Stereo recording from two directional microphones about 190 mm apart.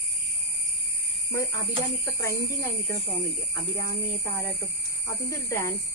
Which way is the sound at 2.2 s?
15° left (ahead or behind).